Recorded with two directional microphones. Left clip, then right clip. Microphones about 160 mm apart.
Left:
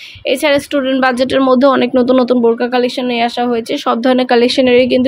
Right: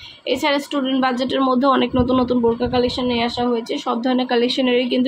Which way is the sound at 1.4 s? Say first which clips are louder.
Left 6 dB; 40° left (ahead or behind).